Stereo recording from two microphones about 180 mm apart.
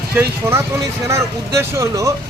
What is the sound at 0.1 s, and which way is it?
A man's voice, 15° right (ahead or behind).